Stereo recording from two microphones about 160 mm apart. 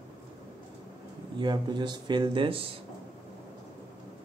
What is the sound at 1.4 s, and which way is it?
Speech, 30° right (ahead or behind).